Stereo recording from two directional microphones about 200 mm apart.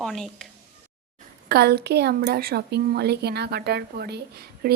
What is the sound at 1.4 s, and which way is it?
A woman's voice, 55° right (ahead or behind).